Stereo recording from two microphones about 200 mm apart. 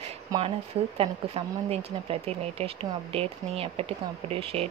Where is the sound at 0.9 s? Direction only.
30° right (ahead or behind).